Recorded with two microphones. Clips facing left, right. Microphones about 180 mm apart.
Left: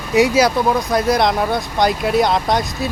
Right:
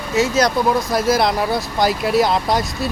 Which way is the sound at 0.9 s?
Centre (ahead or behind).